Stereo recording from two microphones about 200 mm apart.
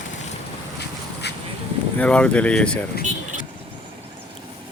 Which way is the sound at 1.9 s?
5° left (ahead or behind).